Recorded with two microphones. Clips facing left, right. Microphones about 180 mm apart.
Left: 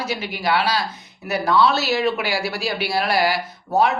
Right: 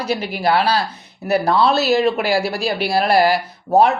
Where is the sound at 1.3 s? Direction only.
35° right (ahead or behind).